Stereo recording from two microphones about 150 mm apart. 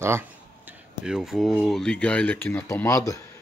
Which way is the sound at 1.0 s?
5° right (ahead or behind).